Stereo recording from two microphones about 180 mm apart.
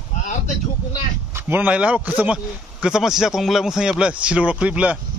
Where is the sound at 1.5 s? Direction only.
10° right (ahead or behind).